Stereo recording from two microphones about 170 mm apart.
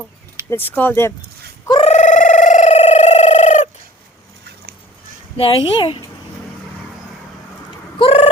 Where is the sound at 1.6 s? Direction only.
35° left (ahead or behind).